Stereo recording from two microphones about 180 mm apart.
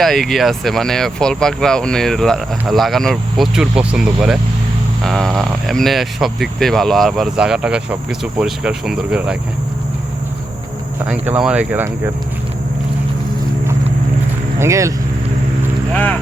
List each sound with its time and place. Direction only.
0.0 s speech: centre (ahead or behind)
11.0 s speech: 5° right (ahead or behind)
14.6 s speech: 15° right (ahead or behind)
15.9 s speech: 10° left (ahead or behind)